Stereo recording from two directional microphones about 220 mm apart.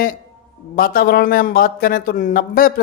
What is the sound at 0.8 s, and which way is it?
A man's voice, 40° left (ahead or behind).